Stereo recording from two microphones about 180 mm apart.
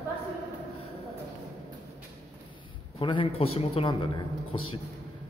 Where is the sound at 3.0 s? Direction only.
30° left (ahead or behind).